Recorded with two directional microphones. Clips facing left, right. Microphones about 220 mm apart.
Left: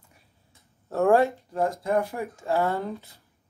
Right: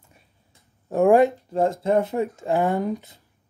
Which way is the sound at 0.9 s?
15° right (ahead or behind).